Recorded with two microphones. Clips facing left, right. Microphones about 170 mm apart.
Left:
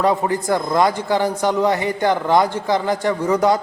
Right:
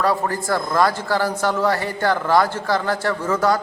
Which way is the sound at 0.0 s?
20° left (ahead or behind).